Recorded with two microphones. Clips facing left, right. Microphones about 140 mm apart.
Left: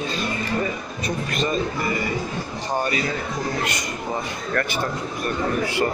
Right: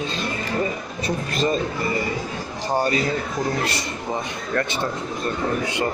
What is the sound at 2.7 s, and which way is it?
Speech, 30° right (ahead or behind).